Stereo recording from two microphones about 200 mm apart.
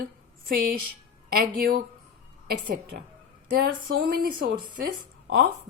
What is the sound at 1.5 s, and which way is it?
Speech, 45° right (ahead or behind).